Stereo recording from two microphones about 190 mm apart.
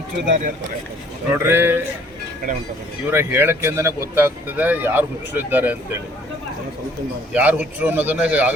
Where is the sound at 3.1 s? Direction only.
10° right (ahead or behind).